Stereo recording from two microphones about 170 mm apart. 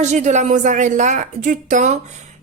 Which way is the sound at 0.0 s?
45° right (ahead or behind).